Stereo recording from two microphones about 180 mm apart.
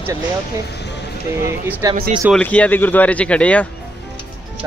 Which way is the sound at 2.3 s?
10° left (ahead or behind).